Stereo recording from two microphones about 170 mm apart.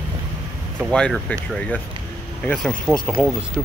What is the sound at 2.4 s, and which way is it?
Speech, 5° left (ahead or behind).